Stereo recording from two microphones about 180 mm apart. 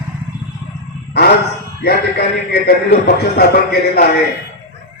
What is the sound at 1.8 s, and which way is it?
A man's voice, 65° left (ahead or behind).